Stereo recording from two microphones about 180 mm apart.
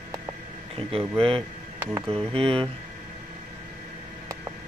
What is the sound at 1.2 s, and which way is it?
Speech, 30° right (ahead or behind).